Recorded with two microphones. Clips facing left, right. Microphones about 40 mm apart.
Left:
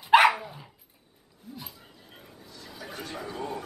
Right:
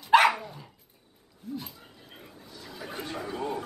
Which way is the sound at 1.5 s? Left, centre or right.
Centre.